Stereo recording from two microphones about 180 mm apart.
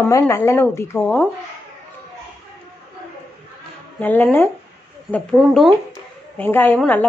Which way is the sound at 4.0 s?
10° left (ahead or behind).